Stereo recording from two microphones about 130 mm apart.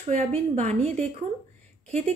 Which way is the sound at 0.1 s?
55° right (ahead or behind).